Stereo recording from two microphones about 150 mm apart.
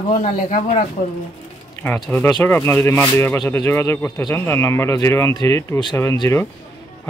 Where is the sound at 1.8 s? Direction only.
10° left (ahead or behind).